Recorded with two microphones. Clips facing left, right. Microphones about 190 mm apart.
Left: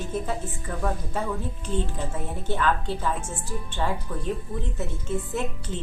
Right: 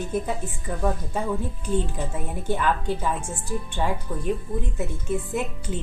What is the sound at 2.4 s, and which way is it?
A woman's voice, 15° right (ahead or behind).